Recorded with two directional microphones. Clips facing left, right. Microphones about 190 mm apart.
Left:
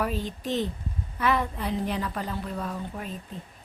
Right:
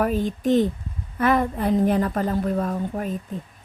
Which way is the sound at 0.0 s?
50° right (ahead or behind).